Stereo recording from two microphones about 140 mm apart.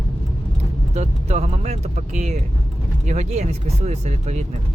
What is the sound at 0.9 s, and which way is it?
Speech, 55° right (ahead or behind).